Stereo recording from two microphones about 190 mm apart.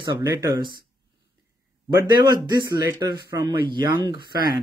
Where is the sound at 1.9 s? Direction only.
20° right (ahead or behind).